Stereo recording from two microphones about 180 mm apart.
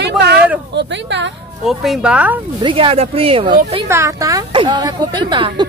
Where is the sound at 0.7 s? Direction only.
75° right (ahead or behind).